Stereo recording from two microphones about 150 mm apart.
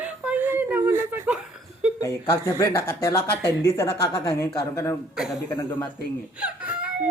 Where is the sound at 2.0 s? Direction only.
15° left (ahead or behind).